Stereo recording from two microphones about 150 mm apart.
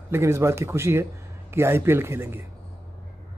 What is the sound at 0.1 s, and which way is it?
Speech, 20° right (ahead or behind).